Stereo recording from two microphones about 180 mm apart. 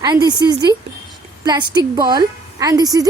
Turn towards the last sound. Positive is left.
turn(degrees=-20)  # may be behind; listen again after turning